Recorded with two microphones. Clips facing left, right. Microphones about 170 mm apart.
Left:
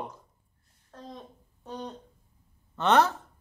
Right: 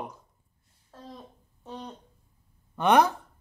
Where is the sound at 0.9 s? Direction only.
5° right (ahead or behind).